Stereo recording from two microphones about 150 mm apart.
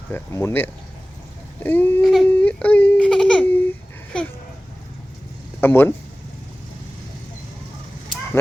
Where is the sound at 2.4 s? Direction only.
10° left (ahead or behind).